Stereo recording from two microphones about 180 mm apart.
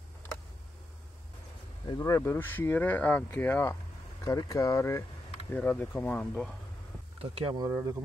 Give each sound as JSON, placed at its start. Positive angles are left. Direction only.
{"t": 1.9, "sound": "speech", "side_deg": 20}
{"t": 7.2, "sound": "speech", "side_deg": -35}
{"t": 7.5, "sound": "speech", "side_deg": -15}